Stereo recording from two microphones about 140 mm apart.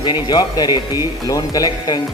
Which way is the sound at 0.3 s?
30° left (ahead or behind).